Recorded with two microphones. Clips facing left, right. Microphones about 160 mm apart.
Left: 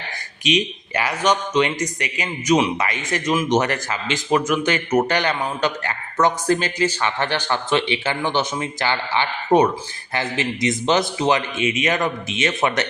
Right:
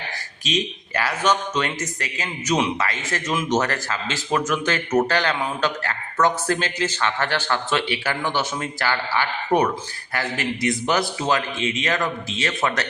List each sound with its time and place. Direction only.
0.5 s a man's voice: 15° left (ahead or behind)